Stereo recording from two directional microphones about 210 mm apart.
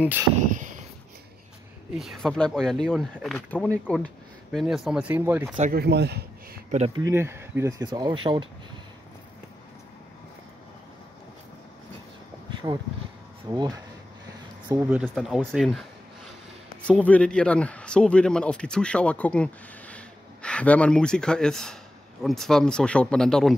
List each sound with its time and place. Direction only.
0.4 s a sound: 35° right (ahead or behind)
2.0 s a man's voice: centre (ahead or behind)
5.6 s speech: 45° right (ahead or behind)
7.0 s speech: 15° right (ahead or behind)
12.6 s a man's voice: 25° right (ahead or behind); by 15.8 s centre (ahead or behind)
16.8 s a man's voice: 5° left (ahead or behind)